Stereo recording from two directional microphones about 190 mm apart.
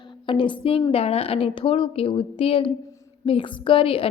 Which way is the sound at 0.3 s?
25° left (ahead or behind).